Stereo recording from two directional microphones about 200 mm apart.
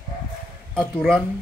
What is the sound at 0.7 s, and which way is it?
Speech, 5° left (ahead or behind).